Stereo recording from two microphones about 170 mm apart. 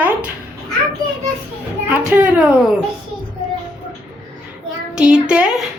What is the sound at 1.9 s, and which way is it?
Speech, 10° right (ahead or behind).